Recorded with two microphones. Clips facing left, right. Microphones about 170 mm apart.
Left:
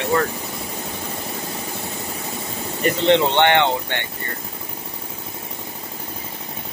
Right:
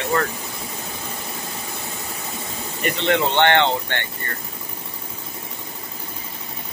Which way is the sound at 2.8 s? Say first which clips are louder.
Left 4 dB; 25° left (ahead or behind).